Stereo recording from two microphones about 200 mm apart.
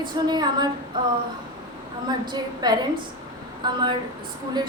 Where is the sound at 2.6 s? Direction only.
20° right (ahead or behind).